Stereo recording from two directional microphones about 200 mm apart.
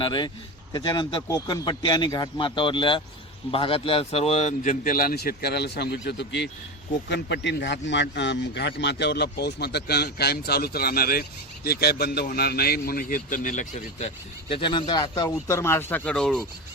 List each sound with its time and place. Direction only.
0.0 s speech: 25° left (ahead or behind); by 14.1 s 40° left (ahead or behind)
14.5 s speech: 25° left (ahead or behind); by 16.4 s 5° left (ahead or behind)